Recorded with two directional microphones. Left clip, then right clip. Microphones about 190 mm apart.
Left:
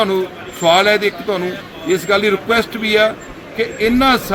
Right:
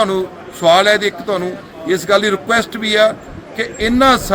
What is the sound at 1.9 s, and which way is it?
Speech, 5° right (ahead or behind).